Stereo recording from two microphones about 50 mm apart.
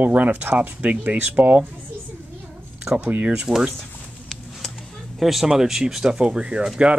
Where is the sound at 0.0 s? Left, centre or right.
Right.